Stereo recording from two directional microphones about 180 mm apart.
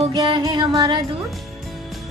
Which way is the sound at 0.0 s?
25° right (ahead or behind).